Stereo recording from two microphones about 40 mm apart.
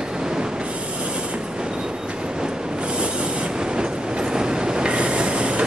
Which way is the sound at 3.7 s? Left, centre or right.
Centre.